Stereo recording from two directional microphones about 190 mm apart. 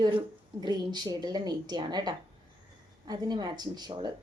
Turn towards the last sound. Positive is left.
turn(degrees=-20)  # may be behind; listen again after turning